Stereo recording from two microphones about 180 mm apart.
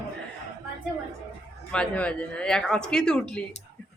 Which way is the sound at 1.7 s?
5° left (ahead or behind).